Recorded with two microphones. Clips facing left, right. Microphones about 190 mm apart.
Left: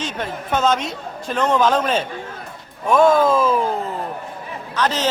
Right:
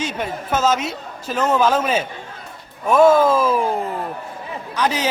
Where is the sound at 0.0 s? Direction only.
5° right (ahead or behind).